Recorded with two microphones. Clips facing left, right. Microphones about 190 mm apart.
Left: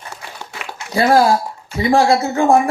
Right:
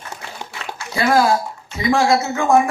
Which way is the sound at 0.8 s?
30° left (ahead or behind).